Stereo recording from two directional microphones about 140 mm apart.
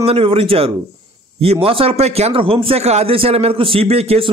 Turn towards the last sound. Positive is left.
turn(degrees=-45)  # may be behind; listen again after turning